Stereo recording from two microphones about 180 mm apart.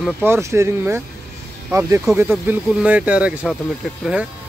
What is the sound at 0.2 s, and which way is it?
Speech, 15° right (ahead or behind).